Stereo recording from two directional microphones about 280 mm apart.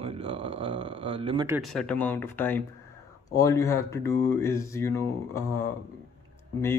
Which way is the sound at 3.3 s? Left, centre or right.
Centre.